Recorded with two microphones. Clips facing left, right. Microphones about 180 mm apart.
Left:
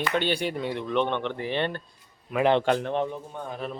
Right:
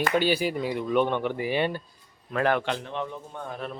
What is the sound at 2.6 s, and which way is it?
Speech, 45° left (ahead or behind).